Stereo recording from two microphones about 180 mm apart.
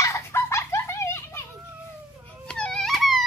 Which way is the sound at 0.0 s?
15° left (ahead or behind).